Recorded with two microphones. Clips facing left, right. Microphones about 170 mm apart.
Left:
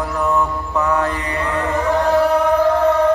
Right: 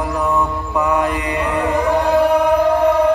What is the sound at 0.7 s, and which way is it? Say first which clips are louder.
Chant: right 2 dB; 15° right (ahead or behind).